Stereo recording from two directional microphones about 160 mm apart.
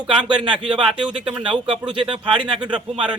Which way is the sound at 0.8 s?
5° right (ahead or behind).